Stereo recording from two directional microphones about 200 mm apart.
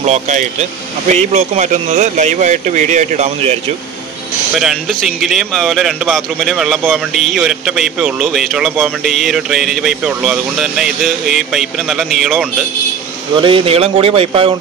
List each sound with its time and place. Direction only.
0.0 s speech: 35° right (ahead or behind)
4.6 s speech: centre (ahead or behind)
13.4 s speech: 25° right (ahead or behind)